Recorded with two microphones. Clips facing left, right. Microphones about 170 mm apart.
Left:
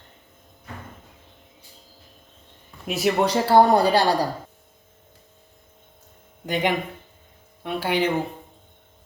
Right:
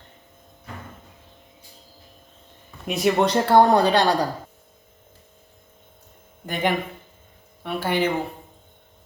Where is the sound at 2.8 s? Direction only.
5° left (ahead or behind).